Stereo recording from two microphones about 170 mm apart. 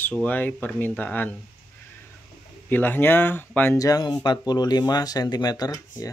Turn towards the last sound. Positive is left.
turn(degrees=20)  # may be behind; listen again after turning